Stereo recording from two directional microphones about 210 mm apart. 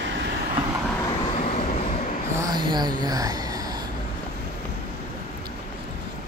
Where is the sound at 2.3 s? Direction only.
20° right (ahead or behind).